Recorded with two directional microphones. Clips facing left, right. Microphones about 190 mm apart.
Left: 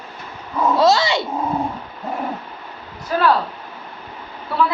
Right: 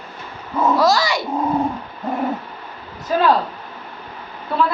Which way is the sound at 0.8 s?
25° left (ahead or behind).